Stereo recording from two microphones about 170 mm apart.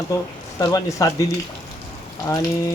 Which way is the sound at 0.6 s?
20° left (ahead or behind).